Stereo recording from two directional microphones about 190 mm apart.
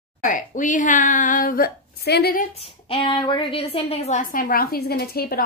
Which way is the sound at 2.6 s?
30° left (ahead or behind).